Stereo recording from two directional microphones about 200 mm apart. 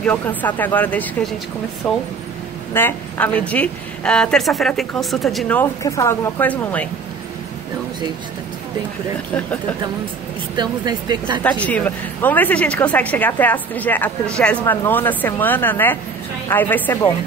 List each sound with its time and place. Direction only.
0.0 s a woman's voice: 10° left (ahead or behind)
5.6 s speech: 15° left (ahead or behind)
10.5 s a woman's voice: 20° right (ahead or behind)
11.4 s speech: 5° left (ahead or behind)